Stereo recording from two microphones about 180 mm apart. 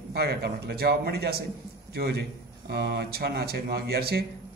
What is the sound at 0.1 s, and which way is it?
Speech, 60° right (ahead or behind).